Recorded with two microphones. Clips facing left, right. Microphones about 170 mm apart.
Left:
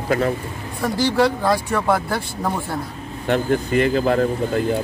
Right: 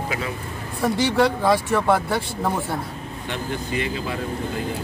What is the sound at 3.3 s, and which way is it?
Speech, 50° left (ahead or behind).